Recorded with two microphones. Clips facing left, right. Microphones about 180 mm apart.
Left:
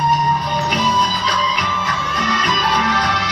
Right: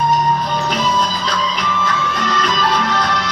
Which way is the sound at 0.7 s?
15° left (ahead or behind).